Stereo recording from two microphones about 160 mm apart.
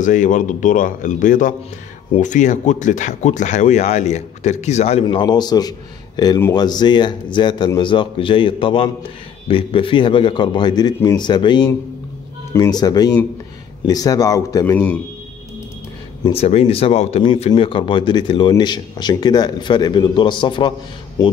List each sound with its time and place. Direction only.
0.0 s speech: 50° left (ahead or behind)
5.0 s a man's voice: 25° left (ahead or behind)
16.3 s a man's voice: 40° left (ahead or behind)